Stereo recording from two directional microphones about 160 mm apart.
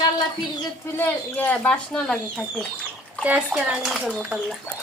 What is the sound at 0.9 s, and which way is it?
Speech, 10° left (ahead or behind).